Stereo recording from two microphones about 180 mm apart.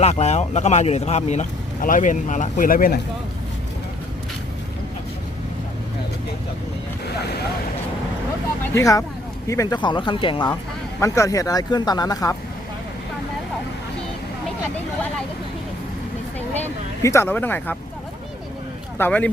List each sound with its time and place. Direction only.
0.0 s speech: 40° left (ahead or behind)
8.7 s speech: 20° left (ahead or behind)
11.0 s speech: 15° left (ahead or behind)
17.0 s speech: 15° left (ahead or behind)
18.9 s speech: 10° left (ahead or behind)